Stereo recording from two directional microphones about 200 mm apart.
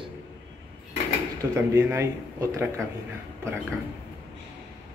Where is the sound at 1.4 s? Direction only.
15° right (ahead or behind).